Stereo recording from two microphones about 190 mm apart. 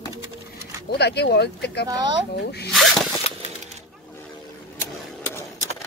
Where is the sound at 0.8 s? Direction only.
60° left (ahead or behind).